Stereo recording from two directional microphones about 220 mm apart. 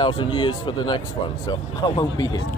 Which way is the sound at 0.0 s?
20° left (ahead or behind).